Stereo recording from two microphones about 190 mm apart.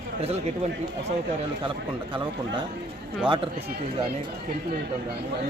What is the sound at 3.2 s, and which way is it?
Speech, 25° right (ahead or behind).